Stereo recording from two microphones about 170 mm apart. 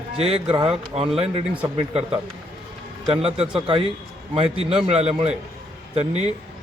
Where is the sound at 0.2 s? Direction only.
35° right (ahead or behind).